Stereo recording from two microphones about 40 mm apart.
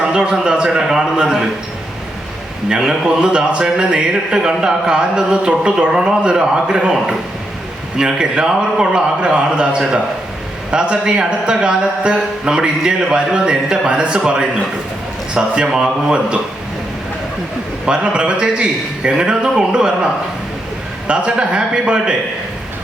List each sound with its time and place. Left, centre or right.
0.1 s a man's voice: centre
2.6 s a man's voice: centre
7.9 s a man's voice: centre
15.4 s a man's voice: centre
17.8 s a man's voice: right
21.1 s a man's voice: right